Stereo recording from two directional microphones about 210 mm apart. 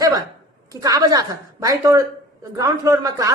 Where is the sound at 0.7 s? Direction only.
15° right (ahead or behind).